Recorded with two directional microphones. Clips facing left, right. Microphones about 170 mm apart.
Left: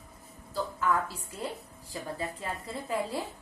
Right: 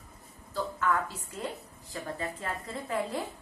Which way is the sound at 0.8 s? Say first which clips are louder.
Left 1 dB; 10° left (ahead or behind).